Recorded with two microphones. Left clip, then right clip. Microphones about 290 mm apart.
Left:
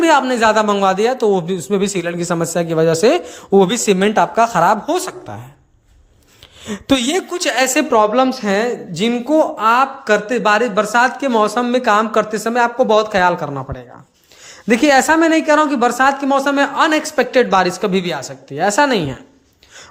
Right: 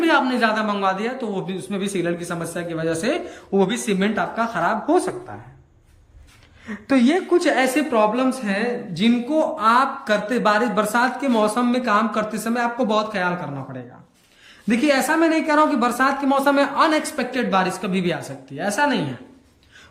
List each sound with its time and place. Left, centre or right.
0.0 s a woman's voice: centre
6.8 s a woman's voice: left